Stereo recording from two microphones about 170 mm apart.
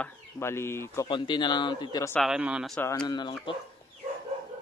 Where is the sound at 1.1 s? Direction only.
25° left (ahead or behind).